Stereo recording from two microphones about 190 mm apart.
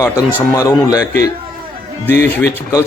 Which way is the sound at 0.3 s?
15° left (ahead or behind).